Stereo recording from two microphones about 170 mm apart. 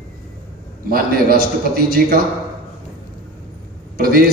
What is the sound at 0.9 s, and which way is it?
A man's voice, 60° right (ahead or behind).